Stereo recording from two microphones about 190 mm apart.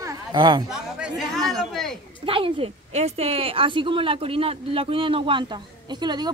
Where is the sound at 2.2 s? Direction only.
30° right (ahead or behind).